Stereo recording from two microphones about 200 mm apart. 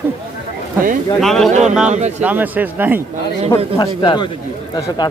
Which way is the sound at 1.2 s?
Centre (ahead or behind).